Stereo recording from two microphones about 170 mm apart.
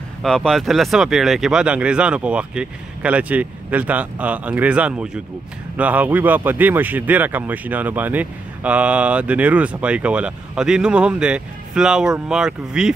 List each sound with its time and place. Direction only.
0.2 s speech: centre (ahead or behind)